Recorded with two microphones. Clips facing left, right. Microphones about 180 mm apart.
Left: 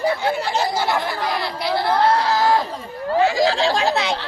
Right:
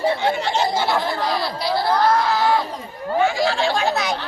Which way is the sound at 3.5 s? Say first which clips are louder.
Left 1 dB; 35° left (ahead or behind).